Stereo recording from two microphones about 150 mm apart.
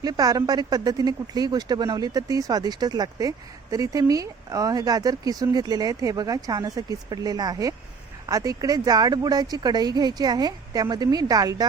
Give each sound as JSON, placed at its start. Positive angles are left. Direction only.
{"t": 0.0, "sound": "speech", "side_deg": -25}